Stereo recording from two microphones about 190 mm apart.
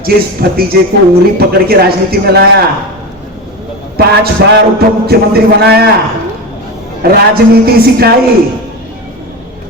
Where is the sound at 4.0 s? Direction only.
55° right (ahead or behind).